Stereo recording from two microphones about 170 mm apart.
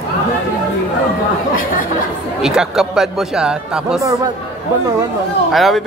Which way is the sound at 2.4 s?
5° right (ahead or behind).